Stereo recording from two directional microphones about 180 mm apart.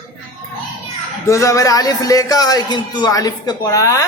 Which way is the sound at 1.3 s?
15° left (ahead or behind).